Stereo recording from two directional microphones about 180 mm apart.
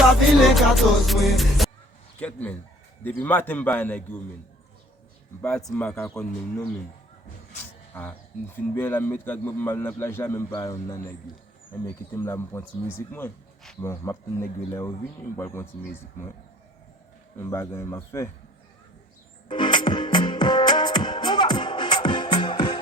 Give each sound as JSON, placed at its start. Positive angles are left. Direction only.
{"t": 0.5, "sound": "music", "side_deg": 0}
{"t": 2.1, "sound": "speech", "side_deg": 10}
{"t": 5.4, "sound": "speech", "side_deg": 5}
{"t": 5.6, "sound": "music", "side_deg": 10}
{"t": 7.9, "sound": "speech", "side_deg": 10}
{"t": 17.3, "sound": "speech", "side_deg": 15}
{"t": 19.5, "sound": "music", "side_deg": 25}